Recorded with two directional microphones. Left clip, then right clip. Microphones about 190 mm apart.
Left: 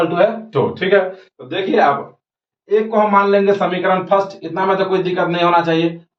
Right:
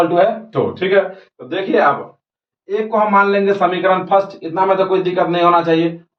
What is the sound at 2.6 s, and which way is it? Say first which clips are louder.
Speech: left 1 dB; 20° left (ahead or behind).